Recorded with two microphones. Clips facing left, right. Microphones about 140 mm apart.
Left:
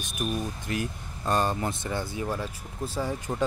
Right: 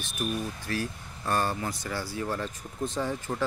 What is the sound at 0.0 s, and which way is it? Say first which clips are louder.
Speech: left 1 dB; 20° left (ahead or behind).